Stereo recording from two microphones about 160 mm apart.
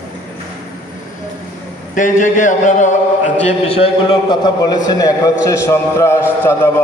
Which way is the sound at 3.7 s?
35° left (ahead or behind).